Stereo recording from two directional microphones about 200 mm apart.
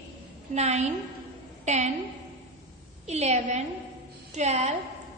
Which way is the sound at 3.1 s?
35° right (ahead or behind).